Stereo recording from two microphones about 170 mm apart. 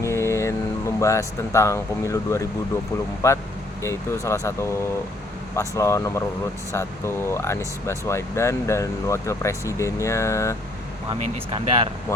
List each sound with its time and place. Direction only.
0.0 s a sound: 15° left (ahead or behind)
3.2 s speech: 15° left (ahead or behind)
11.1 s speech: 30° right (ahead or behind)